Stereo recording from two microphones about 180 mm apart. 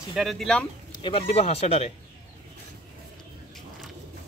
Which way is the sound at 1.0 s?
30° left (ahead or behind).